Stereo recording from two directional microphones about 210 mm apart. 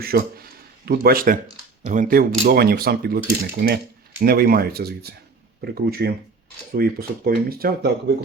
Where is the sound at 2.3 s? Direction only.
70° right (ahead or behind).